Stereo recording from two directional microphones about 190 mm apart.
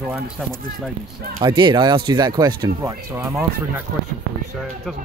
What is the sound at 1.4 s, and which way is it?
Speech, 25° right (ahead or behind).